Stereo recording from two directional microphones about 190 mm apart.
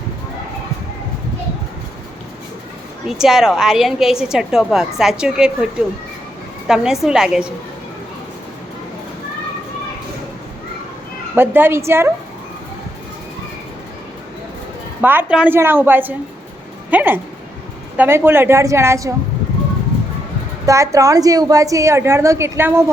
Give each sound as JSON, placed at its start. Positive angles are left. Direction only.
{"t": 3.1, "sound": "a woman's voice", "side_deg": 0}
{"t": 6.7, "sound": "a woman's voice", "side_deg": -5}
{"t": 11.3, "sound": "a woman's voice", "side_deg": -10}
{"t": 15.0, "sound": "a woman's voice", "side_deg": -10}
{"t": 20.7, "sound": "a woman's voice", "side_deg": -15}